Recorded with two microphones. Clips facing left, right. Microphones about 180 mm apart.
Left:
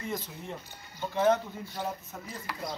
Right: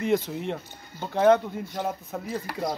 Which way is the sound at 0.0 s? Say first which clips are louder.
Right 12 dB; 75° right (ahead or behind).